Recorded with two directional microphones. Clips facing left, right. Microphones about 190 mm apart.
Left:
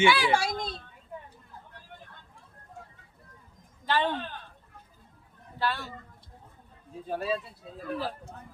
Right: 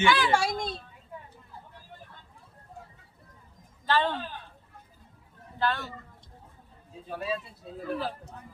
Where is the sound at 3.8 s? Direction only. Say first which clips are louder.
Right 1 dB; 15° left (ahead or behind).